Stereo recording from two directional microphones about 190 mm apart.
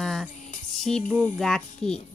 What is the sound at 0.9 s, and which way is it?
Speech, 5° left (ahead or behind).